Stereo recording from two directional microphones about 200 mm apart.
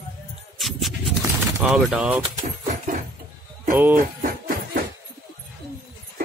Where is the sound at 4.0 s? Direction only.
50° right (ahead or behind).